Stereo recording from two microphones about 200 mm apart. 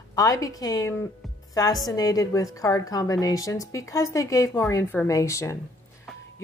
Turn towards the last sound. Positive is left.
turn(degrees=15)  # may be behind; listen again after turning